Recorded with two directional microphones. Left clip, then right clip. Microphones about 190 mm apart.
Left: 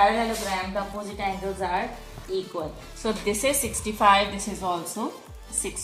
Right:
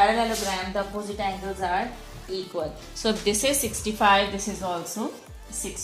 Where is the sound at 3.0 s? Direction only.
50° right (ahead or behind).